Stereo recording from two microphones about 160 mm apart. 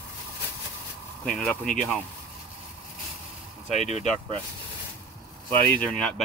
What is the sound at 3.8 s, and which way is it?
Speech, 40° right (ahead or behind).